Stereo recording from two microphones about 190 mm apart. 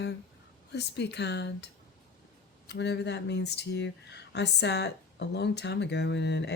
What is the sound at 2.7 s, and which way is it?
Speech, 65° left (ahead or behind).